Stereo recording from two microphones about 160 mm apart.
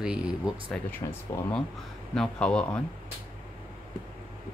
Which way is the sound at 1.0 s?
20° left (ahead or behind).